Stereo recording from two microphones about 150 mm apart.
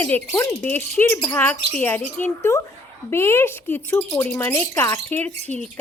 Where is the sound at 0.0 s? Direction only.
15° left (ahead or behind).